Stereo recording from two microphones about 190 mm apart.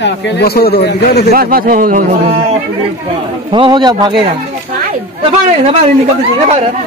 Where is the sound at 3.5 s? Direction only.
25° right (ahead or behind).